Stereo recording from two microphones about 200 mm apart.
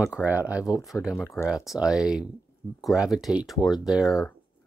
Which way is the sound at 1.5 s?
5° right (ahead or behind).